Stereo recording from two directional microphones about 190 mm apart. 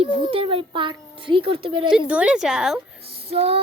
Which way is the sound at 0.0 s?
30° right (ahead or behind).